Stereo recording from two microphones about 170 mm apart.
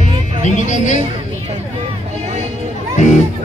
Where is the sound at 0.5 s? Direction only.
45° left (ahead or behind).